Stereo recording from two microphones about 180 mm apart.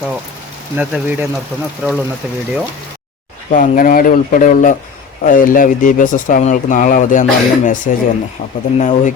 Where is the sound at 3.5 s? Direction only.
50° left (ahead or behind).